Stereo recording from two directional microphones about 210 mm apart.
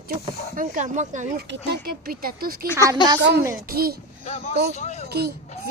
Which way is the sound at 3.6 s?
45° right (ahead or behind).